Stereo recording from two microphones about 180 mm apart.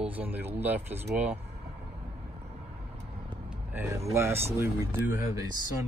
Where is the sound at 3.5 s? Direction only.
10° right (ahead or behind).